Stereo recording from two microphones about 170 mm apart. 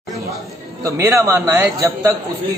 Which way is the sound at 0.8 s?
15° right (ahead or behind).